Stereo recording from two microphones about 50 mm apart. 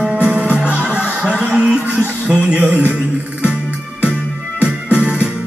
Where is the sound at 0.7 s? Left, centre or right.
Left.